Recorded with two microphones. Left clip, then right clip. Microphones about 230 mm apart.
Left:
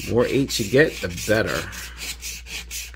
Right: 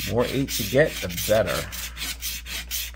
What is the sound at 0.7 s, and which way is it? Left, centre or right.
Speech, left.